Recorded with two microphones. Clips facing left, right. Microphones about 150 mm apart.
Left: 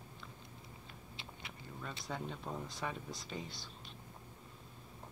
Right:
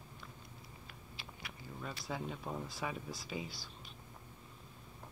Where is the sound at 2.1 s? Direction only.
5° right (ahead or behind).